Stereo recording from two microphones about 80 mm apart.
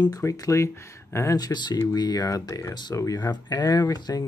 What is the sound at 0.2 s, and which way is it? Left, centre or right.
Speech, left.